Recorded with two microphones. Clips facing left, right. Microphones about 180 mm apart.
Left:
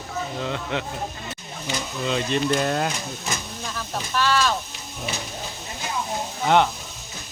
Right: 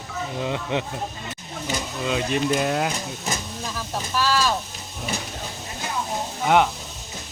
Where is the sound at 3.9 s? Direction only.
5° right (ahead or behind).